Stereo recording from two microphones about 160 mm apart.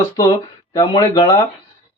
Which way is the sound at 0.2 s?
25° left (ahead or behind).